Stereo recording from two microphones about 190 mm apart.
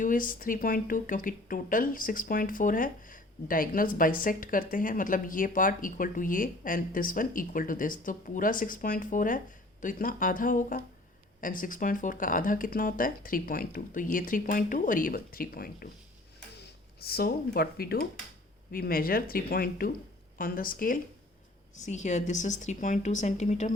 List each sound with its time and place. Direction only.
0.0 s a woman's voice: 45° left (ahead or behind)